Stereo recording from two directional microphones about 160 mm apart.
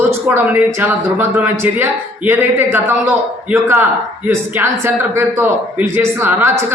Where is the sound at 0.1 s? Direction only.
15° right (ahead or behind).